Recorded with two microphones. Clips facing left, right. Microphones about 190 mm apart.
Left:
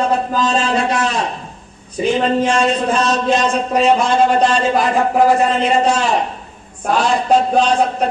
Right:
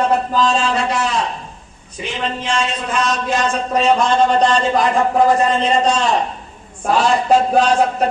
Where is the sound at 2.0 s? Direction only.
40° left (ahead or behind).